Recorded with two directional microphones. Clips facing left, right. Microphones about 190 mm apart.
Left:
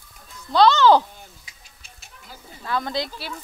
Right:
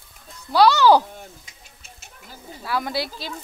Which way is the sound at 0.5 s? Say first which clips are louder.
Even; 10° right (ahead or behind).